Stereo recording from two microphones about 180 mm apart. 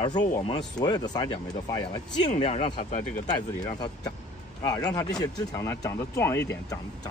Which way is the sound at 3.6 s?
25° left (ahead or behind).